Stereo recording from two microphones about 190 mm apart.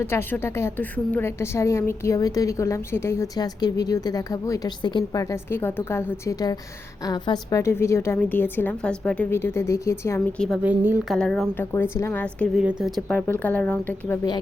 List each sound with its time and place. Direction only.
0.0 s a woman's voice: 10° left (ahead or behind)
10.6 s a woman's voice: 10° right (ahead or behind)
11.2 s speech: 5° left (ahead or behind)
11.6 s a woman's voice: 15° left (ahead or behind)